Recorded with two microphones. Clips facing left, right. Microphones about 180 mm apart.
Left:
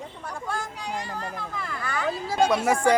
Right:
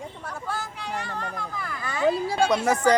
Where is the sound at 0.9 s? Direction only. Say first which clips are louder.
Right 1 dB; 10° left (ahead or behind).